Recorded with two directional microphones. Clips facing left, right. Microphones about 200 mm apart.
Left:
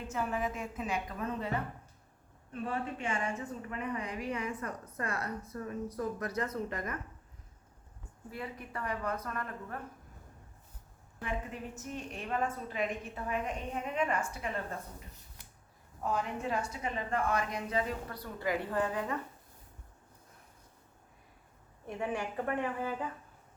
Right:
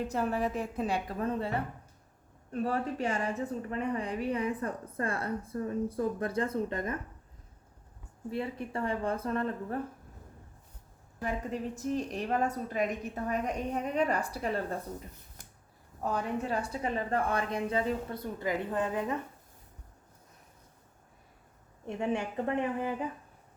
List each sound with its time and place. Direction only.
0.0 s a woman's voice: 35° right (ahead or behind)
8.3 s a woman's voice: 30° right (ahead or behind)
11.2 s a woman's voice: 40° right (ahead or behind)
16.0 s a woman's voice: 35° right (ahead or behind)
21.8 s a woman's voice: 25° right (ahead or behind)